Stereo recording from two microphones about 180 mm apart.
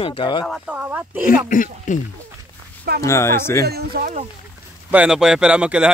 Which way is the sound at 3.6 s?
60° right (ahead or behind).